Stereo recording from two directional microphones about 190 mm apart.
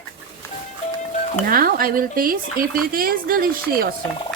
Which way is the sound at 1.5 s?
50° right (ahead or behind).